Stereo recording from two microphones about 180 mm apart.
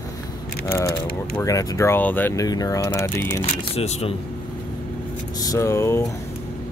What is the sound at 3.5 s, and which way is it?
Speech, 35° left (ahead or behind).